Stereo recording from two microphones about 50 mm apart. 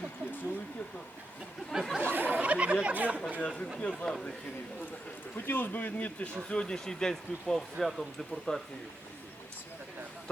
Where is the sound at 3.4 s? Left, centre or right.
Left.